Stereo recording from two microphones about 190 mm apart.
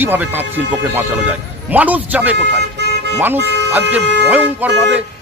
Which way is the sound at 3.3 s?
65° right (ahead or behind).